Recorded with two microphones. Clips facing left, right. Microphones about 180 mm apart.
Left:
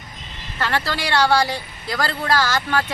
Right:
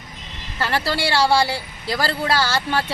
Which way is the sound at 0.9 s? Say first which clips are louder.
Right 1 dB; 30° right (ahead or behind).